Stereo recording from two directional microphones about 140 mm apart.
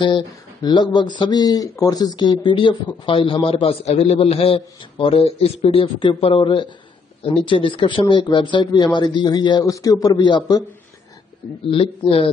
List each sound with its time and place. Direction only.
0.0 s a man's voice: 35° left (ahead or behind)
11.6 s a man's voice: 40° left (ahead or behind)